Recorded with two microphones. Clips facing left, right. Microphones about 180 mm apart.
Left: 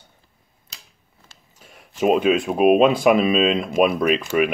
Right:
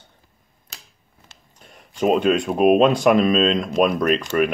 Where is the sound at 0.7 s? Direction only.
50° right (ahead or behind).